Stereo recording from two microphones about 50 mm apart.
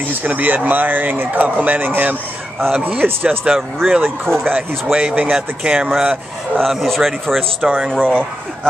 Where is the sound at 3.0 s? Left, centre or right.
Centre.